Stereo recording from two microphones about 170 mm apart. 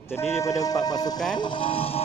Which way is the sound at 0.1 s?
15° left (ahead or behind).